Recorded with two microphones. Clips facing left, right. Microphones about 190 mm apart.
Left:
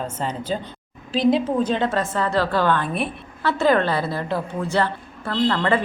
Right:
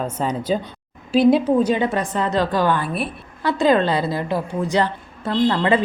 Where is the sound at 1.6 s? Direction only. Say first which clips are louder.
Right 2 dB; 10° right (ahead or behind).